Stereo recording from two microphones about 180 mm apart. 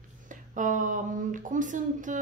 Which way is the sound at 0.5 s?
45° right (ahead or behind).